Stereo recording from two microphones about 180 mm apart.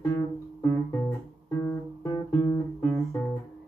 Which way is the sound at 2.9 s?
15° left (ahead or behind).